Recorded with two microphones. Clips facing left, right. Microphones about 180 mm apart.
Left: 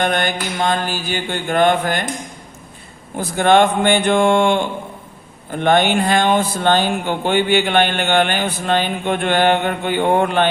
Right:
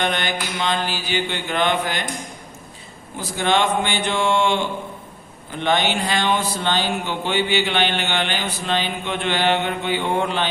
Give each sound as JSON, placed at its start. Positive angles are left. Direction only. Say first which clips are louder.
{"t": 0.0, "sound": "speech", "louder": "left 4 dB", "side_deg": 50}
{"t": 3.2, "sound": "speech", "louder": "left 7 dB", "side_deg": 55}